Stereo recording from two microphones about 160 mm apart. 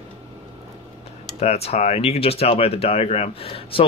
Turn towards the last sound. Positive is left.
turn(degrees=35)  # may be behind; listen again after turning